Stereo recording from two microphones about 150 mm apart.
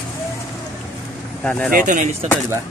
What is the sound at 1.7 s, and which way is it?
Speech, 55° right (ahead or behind).